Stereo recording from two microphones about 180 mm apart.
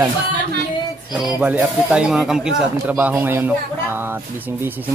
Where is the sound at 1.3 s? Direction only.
5° right (ahead or behind).